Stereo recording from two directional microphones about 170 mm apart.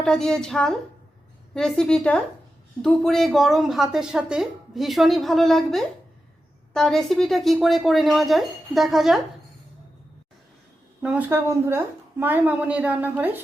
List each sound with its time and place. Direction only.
0.0 s a woman's voice: 5° left (ahead or behind)
11.0 s a woman's voice: 10° right (ahead or behind)